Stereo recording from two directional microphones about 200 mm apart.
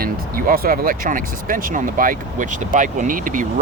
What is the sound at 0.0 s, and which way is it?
Speech, 45° right (ahead or behind).